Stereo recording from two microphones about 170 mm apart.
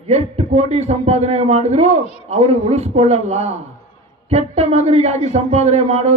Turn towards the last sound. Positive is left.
turn(degrees=-40)  # may be behind; listen again after turning